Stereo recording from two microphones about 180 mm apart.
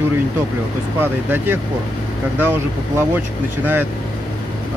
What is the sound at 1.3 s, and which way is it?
Speech, 10° right (ahead or behind).